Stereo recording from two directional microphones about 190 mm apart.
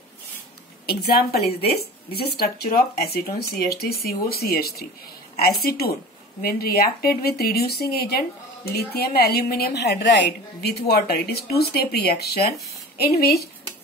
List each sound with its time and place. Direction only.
0.8 s speech: 55° left (ahead or behind)